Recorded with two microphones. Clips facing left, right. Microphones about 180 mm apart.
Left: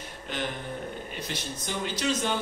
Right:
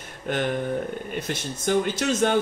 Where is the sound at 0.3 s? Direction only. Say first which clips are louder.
Right 9 dB; 50° right (ahead or behind).